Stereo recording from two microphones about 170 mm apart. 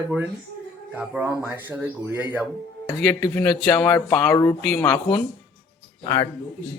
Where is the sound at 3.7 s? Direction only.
10° left (ahead or behind).